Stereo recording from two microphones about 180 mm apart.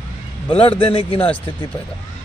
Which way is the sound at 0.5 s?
30° left (ahead or behind).